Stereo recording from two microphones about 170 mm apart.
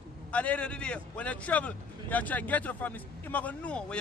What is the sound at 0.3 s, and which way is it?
A man's voice, 10° left (ahead or behind).